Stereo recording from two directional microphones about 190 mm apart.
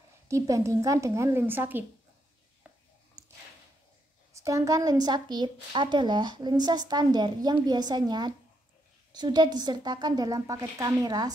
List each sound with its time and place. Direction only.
0.3 s a woman's voice: 15° right (ahead or behind)
4.3 s a woman's voice: 15° right (ahead or behind)